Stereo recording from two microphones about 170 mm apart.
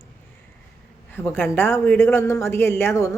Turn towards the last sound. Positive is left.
turn(degrees=15)  # may be behind; listen again after turning